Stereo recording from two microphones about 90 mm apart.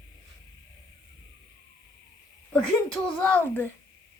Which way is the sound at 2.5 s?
15° left (ahead or behind).